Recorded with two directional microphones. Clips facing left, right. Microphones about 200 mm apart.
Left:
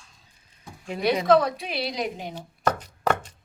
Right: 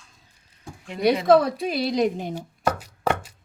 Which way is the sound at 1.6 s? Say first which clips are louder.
Right 7 dB; 45° right (ahead or behind).